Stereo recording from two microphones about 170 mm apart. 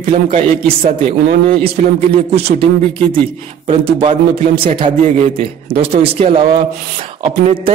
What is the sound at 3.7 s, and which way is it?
A man's voice, 30° right (ahead or behind).